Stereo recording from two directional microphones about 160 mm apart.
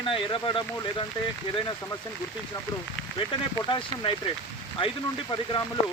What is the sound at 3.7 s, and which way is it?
Speech, 35° left (ahead or behind).